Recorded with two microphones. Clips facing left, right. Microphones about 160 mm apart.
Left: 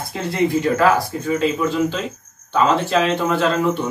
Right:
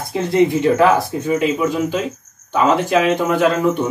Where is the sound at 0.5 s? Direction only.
25° right (ahead or behind).